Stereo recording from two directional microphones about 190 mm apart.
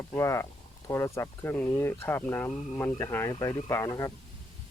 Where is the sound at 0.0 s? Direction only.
15° left (ahead or behind).